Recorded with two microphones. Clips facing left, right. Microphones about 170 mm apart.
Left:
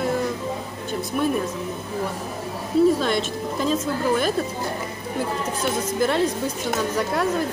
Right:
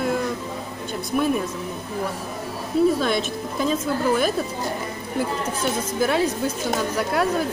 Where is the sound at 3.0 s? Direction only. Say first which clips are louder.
Even; 5° right (ahead or behind).